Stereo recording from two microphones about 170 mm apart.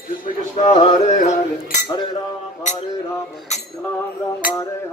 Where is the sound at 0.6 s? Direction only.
35° left (ahead or behind).